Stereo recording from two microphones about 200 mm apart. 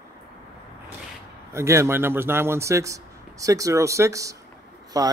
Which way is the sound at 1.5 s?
15° right (ahead or behind).